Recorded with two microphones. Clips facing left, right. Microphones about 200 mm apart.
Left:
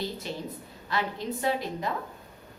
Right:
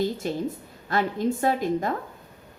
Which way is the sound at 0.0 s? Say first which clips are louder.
Right 8 dB; 50° right (ahead or behind).